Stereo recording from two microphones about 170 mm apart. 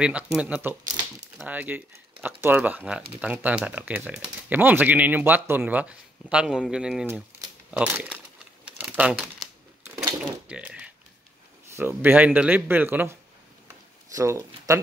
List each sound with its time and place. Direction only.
0.0 s speech: 5° right (ahead or behind)
8.6 s a sound: 10° right (ahead or behind)
10.5 s speech: 5° right (ahead or behind)